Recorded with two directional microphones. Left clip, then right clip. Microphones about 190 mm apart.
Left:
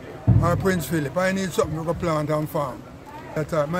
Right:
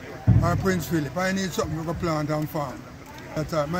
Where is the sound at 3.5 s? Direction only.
10° left (ahead or behind).